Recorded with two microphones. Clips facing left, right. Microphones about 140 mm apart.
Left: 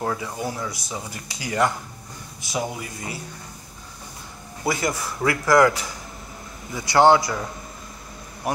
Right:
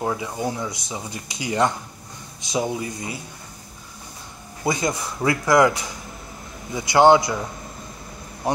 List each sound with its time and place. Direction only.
0.0 s speech: 15° right (ahead or behind)
4.6 s a man's voice: 20° right (ahead or behind)